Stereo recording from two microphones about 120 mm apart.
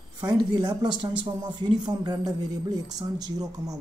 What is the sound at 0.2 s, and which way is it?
Speech, 30° right (ahead or behind).